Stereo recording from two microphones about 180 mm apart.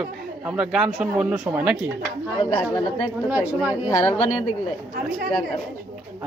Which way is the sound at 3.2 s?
10° right (ahead or behind).